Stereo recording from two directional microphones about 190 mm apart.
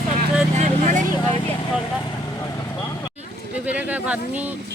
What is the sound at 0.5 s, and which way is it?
Vehicle, 40° right (ahead or behind).